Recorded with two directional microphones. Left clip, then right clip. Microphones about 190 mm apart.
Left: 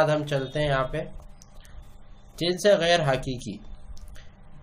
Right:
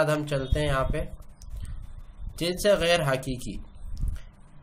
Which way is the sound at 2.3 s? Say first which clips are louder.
Left 2 dB; 15° right (ahead or behind).